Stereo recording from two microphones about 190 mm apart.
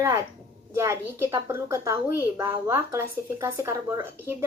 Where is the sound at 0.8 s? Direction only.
15° right (ahead or behind).